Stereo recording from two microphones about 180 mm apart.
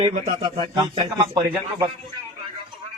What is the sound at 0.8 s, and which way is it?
A man's voice, 20° right (ahead or behind).